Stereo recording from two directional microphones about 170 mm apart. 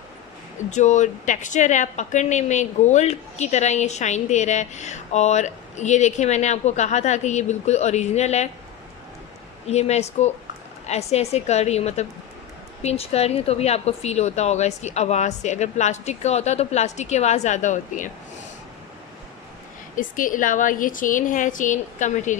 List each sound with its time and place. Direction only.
0.7 s a woman's voice: 45° left (ahead or behind)
9.7 s a woman's voice: 40° left (ahead or behind)
20.0 s a woman's voice: 50° left (ahead or behind)